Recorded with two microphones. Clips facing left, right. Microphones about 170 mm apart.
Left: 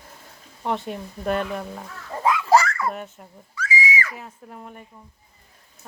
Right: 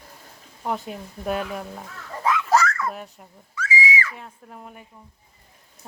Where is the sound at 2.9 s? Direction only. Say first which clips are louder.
Left 3 dB; centre (ahead or behind).